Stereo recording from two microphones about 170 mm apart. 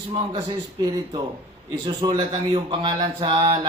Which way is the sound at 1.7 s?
25° right (ahead or behind).